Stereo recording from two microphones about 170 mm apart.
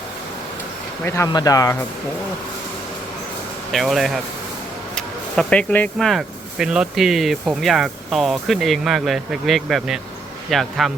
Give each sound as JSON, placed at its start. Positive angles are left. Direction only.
{"t": 1.0, "sound": "speech", "side_deg": 15}
{"t": 3.7, "sound": "speech", "side_deg": 0}